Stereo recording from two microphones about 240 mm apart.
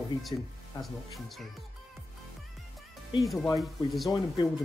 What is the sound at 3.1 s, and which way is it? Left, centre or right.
Speech, centre.